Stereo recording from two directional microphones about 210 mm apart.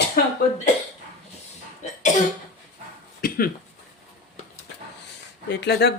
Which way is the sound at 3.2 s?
45° left (ahead or behind).